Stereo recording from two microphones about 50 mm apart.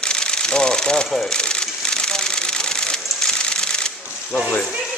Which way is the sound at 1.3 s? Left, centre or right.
Centre.